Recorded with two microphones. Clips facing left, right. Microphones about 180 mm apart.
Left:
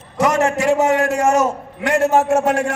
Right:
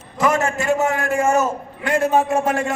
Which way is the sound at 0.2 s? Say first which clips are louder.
Left 3 dB; 75° left (ahead or behind).